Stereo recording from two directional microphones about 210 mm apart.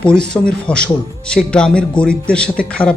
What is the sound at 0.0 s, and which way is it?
A man's voice, 5° left (ahead or behind).